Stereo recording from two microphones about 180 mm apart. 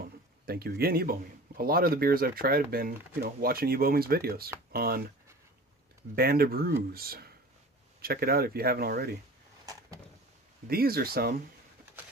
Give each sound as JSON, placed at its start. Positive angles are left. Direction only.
{"t": 0.0, "sound": "a sound", "side_deg": -60}
{"t": 1.5, "sound": "speech", "side_deg": -55}
{"t": 6.1, "sound": "speech", "side_deg": -60}
{"t": 10.7, "sound": "speech", "side_deg": -55}